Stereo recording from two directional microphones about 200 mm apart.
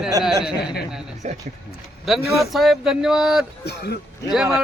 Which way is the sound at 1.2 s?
35° right (ahead or behind).